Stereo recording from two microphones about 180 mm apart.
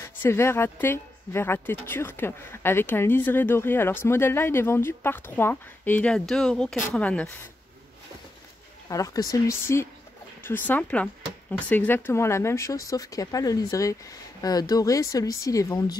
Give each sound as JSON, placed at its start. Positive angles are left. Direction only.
{"t": 0.0, "sound": "speech", "side_deg": 15}
{"t": 8.8, "sound": "speech", "side_deg": 20}